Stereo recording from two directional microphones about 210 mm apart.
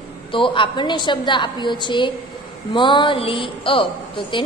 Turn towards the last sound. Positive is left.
turn(degrees=25)  # may be behind; listen again after turning